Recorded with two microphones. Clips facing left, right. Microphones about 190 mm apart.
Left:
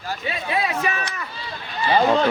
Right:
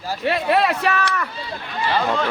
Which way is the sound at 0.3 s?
70° right (ahead or behind).